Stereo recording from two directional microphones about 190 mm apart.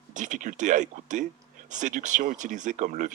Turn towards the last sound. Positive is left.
turn(degrees=-40)  # may be behind; listen again after turning